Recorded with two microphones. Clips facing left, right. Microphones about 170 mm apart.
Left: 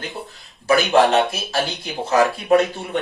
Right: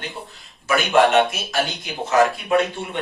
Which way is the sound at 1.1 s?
35° left (ahead or behind).